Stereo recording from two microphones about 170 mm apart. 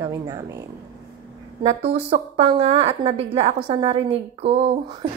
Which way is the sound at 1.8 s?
35° right (ahead or behind).